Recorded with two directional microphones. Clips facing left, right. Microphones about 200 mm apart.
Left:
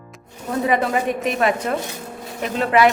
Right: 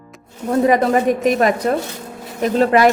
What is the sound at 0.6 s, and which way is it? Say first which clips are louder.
A woman's voice: right 5 dB; 40° right (ahead or behind).